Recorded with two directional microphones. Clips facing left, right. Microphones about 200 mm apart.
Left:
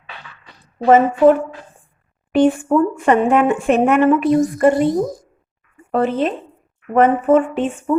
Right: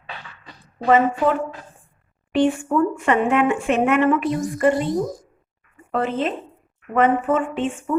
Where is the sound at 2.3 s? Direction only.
40° left (ahead or behind).